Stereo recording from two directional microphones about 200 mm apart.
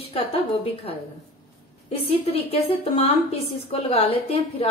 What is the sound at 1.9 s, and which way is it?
A woman's voice, 30° left (ahead or behind).